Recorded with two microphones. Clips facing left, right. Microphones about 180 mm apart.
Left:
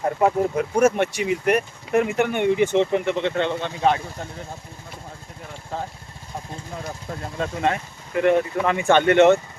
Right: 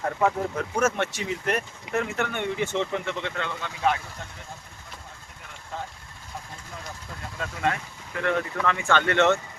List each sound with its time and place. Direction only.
0.0 s speech: 20° left (ahead or behind)
5.7 s speech: 35° left (ahead or behind)
7.3 s speech: 30° left (ahead or behind)